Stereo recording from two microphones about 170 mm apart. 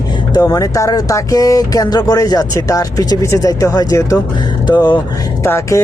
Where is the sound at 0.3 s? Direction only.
20° left (ahead or behind).